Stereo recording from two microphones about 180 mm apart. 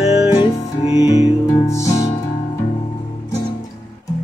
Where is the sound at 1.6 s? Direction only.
15° left (ahead or behind).